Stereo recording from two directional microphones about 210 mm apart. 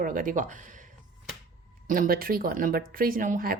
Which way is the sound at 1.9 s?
45° right (ahead or behind).